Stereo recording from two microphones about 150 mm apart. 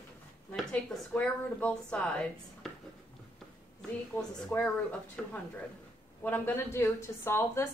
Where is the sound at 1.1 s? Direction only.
10° left (ahead or behind).